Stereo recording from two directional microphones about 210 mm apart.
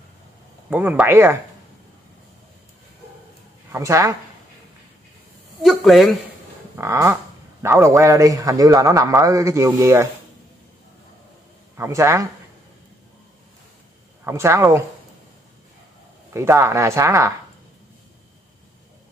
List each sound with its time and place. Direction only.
0.7 s a man's voice: 5° right (ahead or behind)
3.7 s a man's voice: 15° right (ahead or behind)
5.6 s speech: centre (ahead or behind)
6.8 s a man's voice: 15° right (ahead or behind)
11.7 s a man's voice: 15° right (ahead or behind)
14.2 s a man's voice: 15° right (ahead or behind)
16.3 s a man's voice: 15° right (ahead or behind)